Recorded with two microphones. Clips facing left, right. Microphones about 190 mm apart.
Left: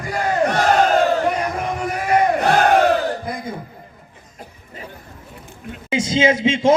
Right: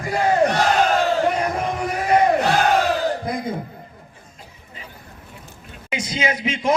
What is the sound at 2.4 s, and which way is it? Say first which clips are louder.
Crowd: left 3 dB; 55° left (ahead or behind).